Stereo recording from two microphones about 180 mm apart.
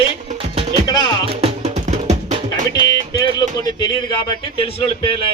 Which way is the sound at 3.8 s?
25° left (ahead or behind).